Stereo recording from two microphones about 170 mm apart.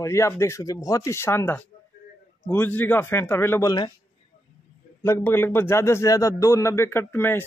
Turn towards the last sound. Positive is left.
turn(degrees=15)  # may be behind; listen again after turning